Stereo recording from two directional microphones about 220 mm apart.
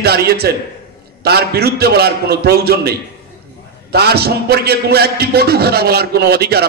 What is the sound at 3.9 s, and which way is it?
A man's voice, 45° right (ahead or behind).